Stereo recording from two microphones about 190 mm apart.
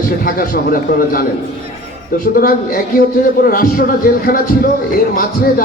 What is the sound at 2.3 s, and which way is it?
A man's voice, 50° left (ahead or behind).